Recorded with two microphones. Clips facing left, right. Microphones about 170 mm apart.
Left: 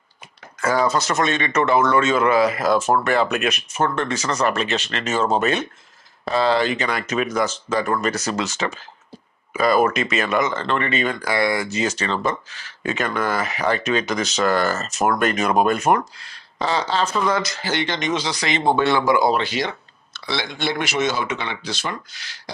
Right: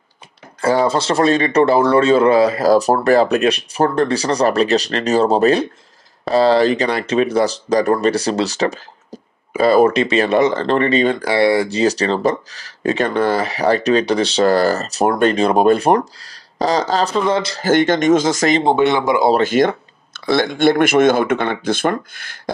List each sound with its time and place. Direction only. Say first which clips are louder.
0.6 s speech: right 4 dB; 30° right (ahead or behind)
17.6 s speech: right 10 dB; 50° right (ahead or behind)
18.7 s speech: left 1 dB; 20° right (ahead or behind)
19.3 s speech: right 9 dB; 50° right (ahead or behind)